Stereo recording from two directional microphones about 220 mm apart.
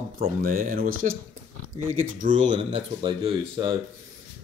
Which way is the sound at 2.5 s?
20° right (ahead or behind).